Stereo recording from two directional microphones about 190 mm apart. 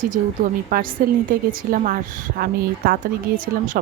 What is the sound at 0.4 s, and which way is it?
Speech, 45° right (ahead or behind).